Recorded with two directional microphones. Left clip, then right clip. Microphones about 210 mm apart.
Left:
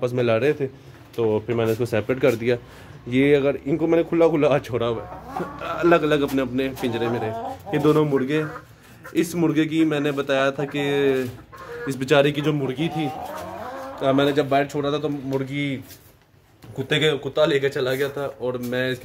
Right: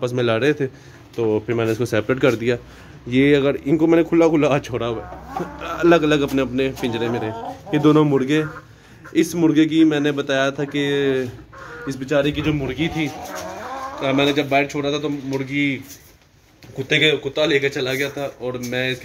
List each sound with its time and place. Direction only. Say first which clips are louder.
0.0 s a man's voice: right 1 dB; 5° right (ahead or behind)
12.0 s a man's voice: left 2 dB; 45° left (ahead or behind)
12.4 s a man's voice: right 2 dB; 5° left (ahead or behind)